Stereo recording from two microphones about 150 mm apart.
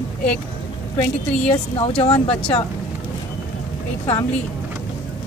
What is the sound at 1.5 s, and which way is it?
Speech, 35° left (ahead or behind).